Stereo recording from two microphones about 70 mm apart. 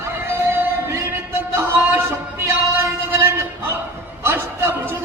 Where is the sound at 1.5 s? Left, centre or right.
Right.